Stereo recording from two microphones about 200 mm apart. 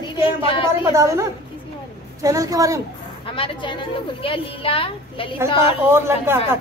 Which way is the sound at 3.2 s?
25° left (ahead or behind).